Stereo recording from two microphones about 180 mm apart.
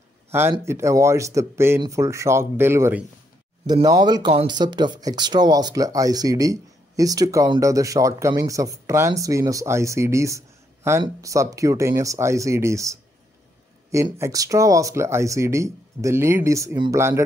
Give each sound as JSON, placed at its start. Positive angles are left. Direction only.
{"t": 0.3, "sound": "speech", "side_deg": -15}
{"t": 3.6, "sound": "speech", "side_deg": -20}